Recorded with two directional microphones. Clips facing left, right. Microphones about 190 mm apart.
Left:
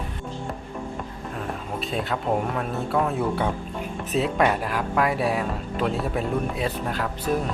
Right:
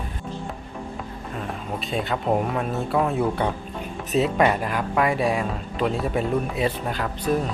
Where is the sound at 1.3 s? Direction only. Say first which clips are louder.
Right 1 dB; centre (ahead or behind).